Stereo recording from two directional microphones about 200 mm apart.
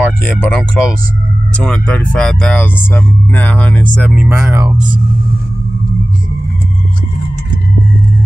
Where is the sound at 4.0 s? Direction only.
5° right (ahead or behind).